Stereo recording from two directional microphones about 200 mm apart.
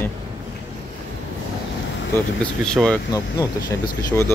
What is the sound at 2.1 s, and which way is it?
Speech, 5° left (ahead or behind).